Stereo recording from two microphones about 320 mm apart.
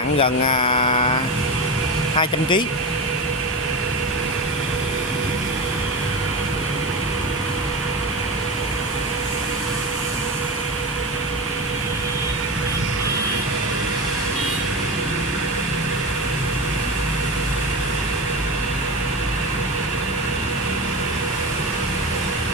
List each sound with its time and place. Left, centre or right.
0.2 s mantra: centre